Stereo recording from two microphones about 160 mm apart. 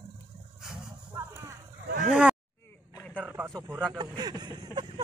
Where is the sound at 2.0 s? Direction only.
5° right (ahead or behind).